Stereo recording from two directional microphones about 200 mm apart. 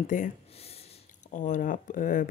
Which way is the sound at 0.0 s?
40° left (ahead or behind).